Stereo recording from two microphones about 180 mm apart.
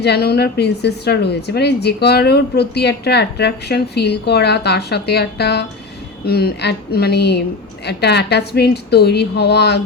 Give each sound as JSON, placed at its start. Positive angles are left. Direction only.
{"t": 0.0, "sound": "a woman's voice", "side_deg": 60}